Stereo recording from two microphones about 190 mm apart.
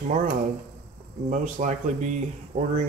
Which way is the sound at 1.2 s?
40° right (ahead or behind).